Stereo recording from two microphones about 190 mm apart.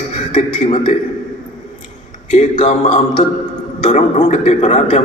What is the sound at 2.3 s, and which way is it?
A man's voice, 40° left (ahead or behind).